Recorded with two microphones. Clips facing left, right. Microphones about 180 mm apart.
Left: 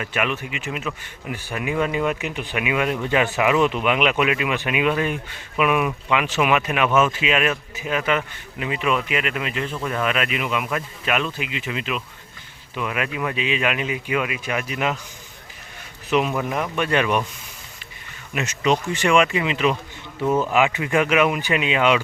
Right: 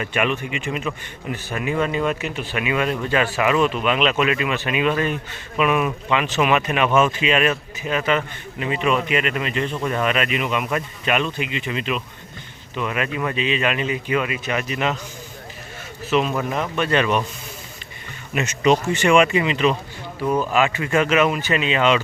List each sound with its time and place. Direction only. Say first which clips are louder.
0.0 s speech: right 3 dB; 5° left (ahead or behind)
16.0 s speech: right 1 dB; 15° left (ahead or behind)
18.3 s speech: right 3 dB; centre (ahead or behind)
20.4 s speech: even; 15° left (ahead or behind)